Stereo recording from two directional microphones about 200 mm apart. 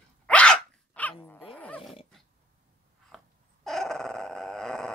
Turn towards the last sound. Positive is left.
turn(degrees=0)  # may be behind; listen again after turning